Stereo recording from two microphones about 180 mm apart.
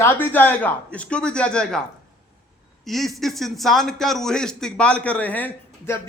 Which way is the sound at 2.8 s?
Centre (ahead or behind).